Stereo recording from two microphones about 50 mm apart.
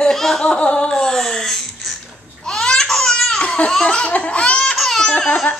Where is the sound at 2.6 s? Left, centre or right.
Centre.